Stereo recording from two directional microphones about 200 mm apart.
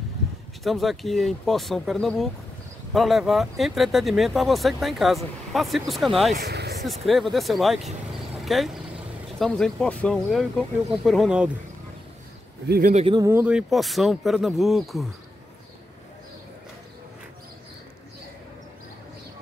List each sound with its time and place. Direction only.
0.7 s speech: centre (ahead or behind)
6.3 s a sound: 55° right (ahead or behind)
7.1 s speech: centre (ahead or behind)
12.6 s speech: 50° right (ahead or behind)
12.9 s speech: 25° right (ahead or behind)
13.3 s speech: 5° right (ahead or behind)